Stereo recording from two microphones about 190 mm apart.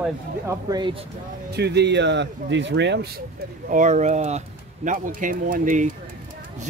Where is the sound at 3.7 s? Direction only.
40° right (ahead or behind).